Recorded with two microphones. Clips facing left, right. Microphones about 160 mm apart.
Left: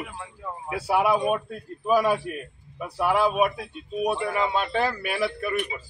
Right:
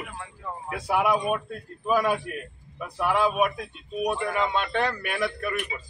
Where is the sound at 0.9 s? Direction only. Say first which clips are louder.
Left 2 dB; 30° left (ahead or behind).